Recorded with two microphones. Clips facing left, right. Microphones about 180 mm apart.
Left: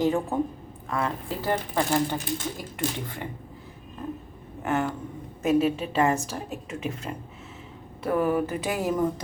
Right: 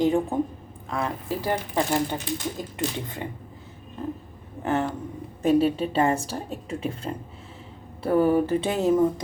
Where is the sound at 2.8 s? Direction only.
20° right (ahead or behind).